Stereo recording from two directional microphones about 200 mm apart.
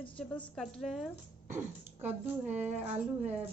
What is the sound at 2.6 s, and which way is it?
Speech, 35° right (ahead or behind).